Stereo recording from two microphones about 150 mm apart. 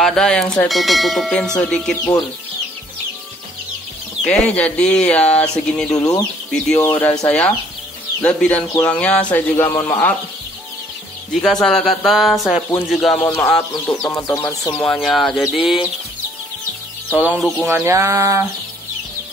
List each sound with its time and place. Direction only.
0.0 s bell: 5° left (ahead or behind)
4.2 s speech: 5° left (ahead or behind)
5.9 s speech: 25° left (ahead or behind)
6.7 s speech: 15° left (ahead or behind)
11.6 s bell: 5° left (ahead or behind)
13.2 s speech: 15° left (ahead or behind)
13.6 s speech: 25° left (ahead or behind)
14.8 s bell: 5° left (ahead or behind)
17.4 s bell: centre (ahead or behind)
17.6 s a sound: 15° right (ahead or behind)